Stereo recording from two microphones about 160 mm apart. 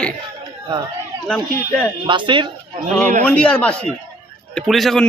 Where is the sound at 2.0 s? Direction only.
30° right (ahead or behind).